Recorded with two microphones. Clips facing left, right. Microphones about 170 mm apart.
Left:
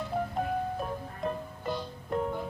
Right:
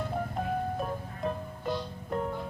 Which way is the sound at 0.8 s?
Centre (ahead or behind).